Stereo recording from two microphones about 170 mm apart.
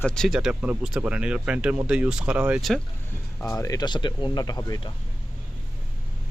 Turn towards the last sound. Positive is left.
turn(degrees=25)  # may be behind; listen again after turning